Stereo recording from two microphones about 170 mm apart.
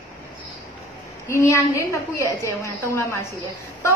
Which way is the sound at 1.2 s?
15° left (ahead or behind).